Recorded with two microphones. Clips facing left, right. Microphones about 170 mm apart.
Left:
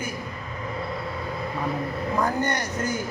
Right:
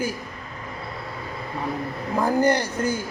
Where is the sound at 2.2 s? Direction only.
30° right (ahead or behind).